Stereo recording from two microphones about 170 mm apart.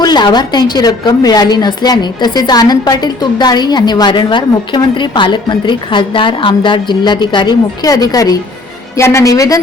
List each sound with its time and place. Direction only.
0.0 s a woman's voice: 25° left (ahead or behind)